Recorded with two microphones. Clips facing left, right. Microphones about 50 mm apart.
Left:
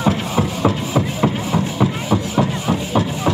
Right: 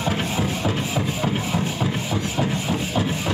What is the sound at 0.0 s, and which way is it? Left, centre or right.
Music, left.